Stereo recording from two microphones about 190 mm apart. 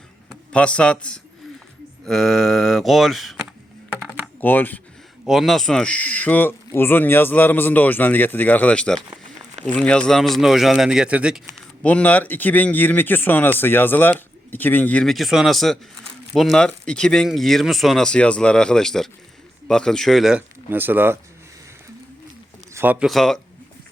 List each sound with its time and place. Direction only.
0.3 s speech: 5° left (ahead or behind)
4.4 s speech: 10° left (ahead or behind)
5.2 s speech: centre (ahead or behind)
11.8 s speech: 5° left (ahead or behind); by 21.2 s 10° right (ahead or behind)
22.7 s speech: 10° right (ahead or behind)